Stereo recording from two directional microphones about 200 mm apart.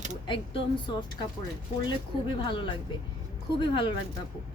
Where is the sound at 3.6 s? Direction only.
25° left (ahead or behind).